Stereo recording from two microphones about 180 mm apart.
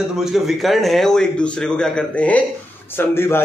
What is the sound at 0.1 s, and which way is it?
A man's voice, centre (ahead or behind).